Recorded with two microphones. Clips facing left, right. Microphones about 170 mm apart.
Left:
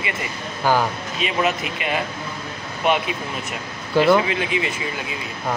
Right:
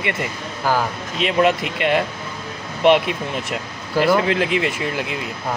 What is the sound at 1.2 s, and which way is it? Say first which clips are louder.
Speech: right 5 dB; 75° right (ahead or behind).